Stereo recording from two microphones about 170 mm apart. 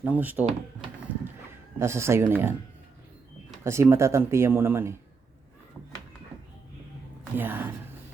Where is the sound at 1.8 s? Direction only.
15° right (ahead or behind).